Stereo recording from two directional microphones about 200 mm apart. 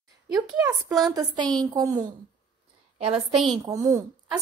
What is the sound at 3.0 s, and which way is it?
A child's voice, 25° right (ahead or behind).